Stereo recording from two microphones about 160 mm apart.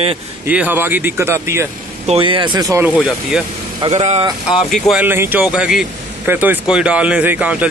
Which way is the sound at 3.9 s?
45° right (ahead or behind).